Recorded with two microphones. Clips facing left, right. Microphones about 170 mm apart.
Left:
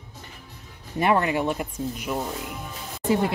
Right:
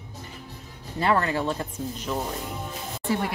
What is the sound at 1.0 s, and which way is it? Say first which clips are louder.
Speech: left 2 dB; 15° left (ahead or behind).